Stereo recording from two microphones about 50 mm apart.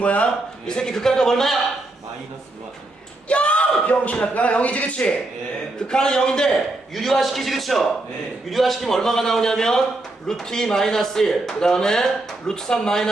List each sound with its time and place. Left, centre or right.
0.0 s a man's voice: left
0.7 s speech: centre
3.2 s speech: left
5.9 s speech: centre
6.9 s a man's voice: centre